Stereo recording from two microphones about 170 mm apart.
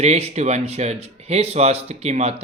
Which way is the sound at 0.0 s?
40° right (ahead or behind).